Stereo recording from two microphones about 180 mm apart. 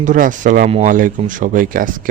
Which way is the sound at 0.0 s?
45° right (ahead or behind).